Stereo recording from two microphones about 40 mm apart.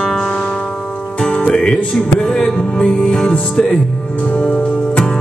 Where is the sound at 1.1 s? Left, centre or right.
Left.